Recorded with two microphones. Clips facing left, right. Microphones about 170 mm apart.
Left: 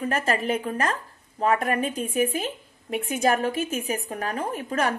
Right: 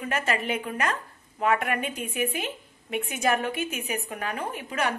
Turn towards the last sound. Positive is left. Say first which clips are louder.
# left 3 dB
turn(degrees=40)  # may be behind; listen again after turning